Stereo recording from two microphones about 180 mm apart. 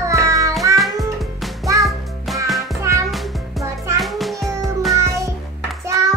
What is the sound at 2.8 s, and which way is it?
Music, 15° right (ahead or behind).